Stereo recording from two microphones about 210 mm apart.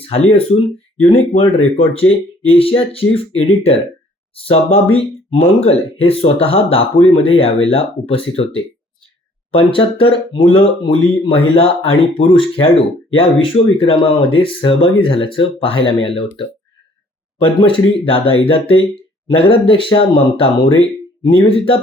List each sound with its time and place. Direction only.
0.0 s speech: 30° left (ahead or behind)